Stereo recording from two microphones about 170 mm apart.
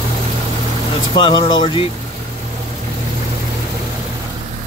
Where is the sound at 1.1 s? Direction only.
25° left (ahead or behind).